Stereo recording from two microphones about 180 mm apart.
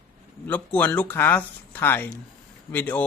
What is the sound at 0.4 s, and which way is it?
Speech, 10° left (ahead or behind).